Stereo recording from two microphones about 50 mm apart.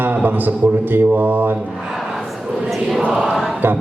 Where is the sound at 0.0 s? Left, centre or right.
Right.